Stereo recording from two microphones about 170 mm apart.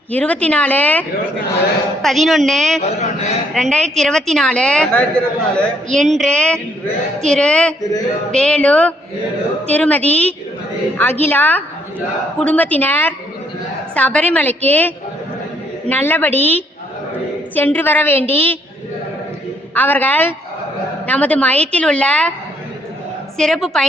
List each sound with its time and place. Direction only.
0.1 s a woman's voice: 10° left (ahead or behind)
3.0 s a man's voice: 40° left (ahead or behind)
3.5 s a woman's voice: 5° left (ahead or behind)
19.7 s a woman's voice: 10° left (ahead or behind)
23.4 s a woman's voice: centre (ahead or behind)